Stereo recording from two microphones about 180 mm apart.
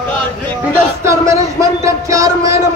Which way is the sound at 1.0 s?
15° right (ahead or behind).